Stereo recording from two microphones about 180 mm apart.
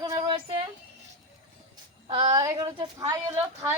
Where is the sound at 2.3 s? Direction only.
20° right (ahead or behind).